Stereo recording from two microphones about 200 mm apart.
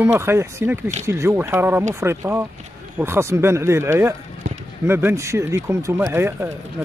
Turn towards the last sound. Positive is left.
turn(degrees=-10)  # may be behind; listen again after turning